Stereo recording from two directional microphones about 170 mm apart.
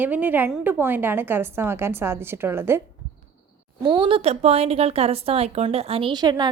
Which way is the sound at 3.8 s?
30° right (ahead or behind).